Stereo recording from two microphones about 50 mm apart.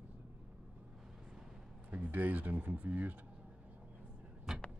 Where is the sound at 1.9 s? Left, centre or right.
Right.